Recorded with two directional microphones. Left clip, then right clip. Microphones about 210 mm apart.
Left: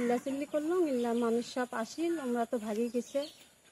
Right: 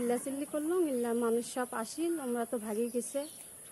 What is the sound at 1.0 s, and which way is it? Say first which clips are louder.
Speech: even; 10° right (ahead or behind).